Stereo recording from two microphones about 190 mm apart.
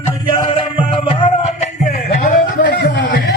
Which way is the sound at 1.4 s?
40° left (ahead or behind).